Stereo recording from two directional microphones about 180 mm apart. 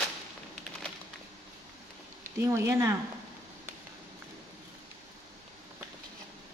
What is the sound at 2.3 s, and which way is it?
Speech, 15° right (ahead or behind).